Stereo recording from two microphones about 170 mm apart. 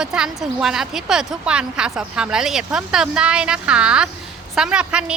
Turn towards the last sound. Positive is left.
turn(degrees=-5)  # may be behind; listen again after turning